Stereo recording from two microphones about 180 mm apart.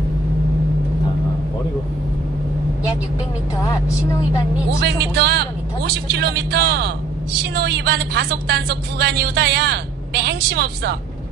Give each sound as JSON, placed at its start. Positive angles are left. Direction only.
{"t": 4.7, "sound": "a woman's voice", "side_deg": -65}